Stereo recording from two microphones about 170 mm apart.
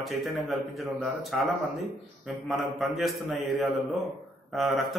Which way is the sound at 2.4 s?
Centre (ahead or behind).